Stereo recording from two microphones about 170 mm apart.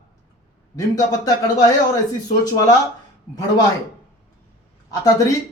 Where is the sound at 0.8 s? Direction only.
20° left (ahead or behind).